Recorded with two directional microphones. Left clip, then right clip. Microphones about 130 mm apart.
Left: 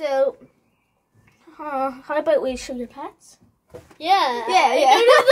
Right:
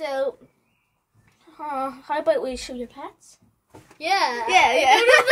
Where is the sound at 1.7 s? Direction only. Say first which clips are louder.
Left 3 dB; 10° left (ahead or behind).